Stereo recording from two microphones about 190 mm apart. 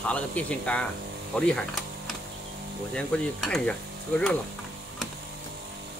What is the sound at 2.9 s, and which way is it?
Speech, 5° left (ahead or behind).